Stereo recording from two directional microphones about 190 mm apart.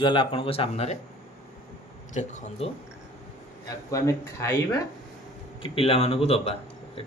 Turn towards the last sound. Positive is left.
turn(degrees=30)  # may be behind; listen again after turning